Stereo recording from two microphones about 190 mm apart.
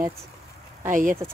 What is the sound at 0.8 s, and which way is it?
Speech, 40° right (ahead or behind).